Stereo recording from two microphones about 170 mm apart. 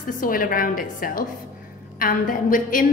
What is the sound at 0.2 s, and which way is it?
A woman's voice, 55° left (ahead or behind).